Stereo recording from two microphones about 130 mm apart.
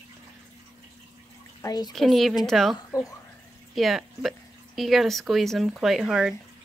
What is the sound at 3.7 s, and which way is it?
Speech, centre (ahead or behind).